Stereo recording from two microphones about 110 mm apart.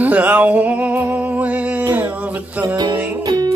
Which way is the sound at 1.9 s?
15° right (ahead or behind).